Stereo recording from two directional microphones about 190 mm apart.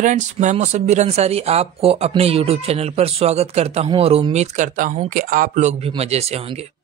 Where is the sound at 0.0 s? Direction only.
40° right (ahead or behind).